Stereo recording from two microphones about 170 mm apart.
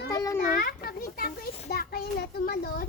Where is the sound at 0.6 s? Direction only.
60° left (ahead or behind).